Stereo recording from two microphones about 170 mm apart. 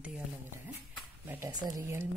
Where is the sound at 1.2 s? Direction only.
10° right (ahead or behind).